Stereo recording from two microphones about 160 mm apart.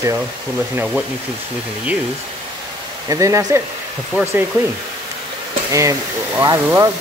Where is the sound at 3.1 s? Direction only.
20° right (ahead or behind).